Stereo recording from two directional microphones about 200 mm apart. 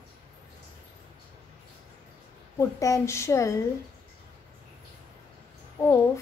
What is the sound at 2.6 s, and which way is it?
A woman's voice, 15° left (ahead or behind).